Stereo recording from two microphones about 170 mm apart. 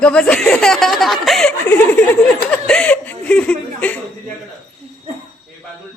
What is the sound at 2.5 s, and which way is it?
Chuckle, 5° left (ahead or behind).